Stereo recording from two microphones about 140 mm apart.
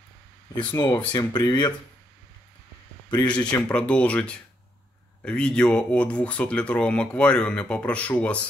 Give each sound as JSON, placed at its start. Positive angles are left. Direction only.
{"t": 0.6, "sound": "speech", "side_deg": 30}
{"t": 3.1, "sound": "speech", "side_deg": 30}
{"t": 3.7, "sound": "speech", "side_deg": 10}